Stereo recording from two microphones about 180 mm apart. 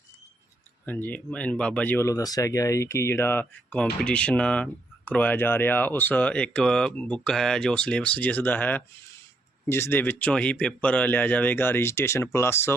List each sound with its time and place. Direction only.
0.9 s speech: 10° left (ahead or behind)